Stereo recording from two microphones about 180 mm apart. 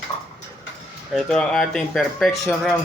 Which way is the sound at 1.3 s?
Centre (ahead or behind).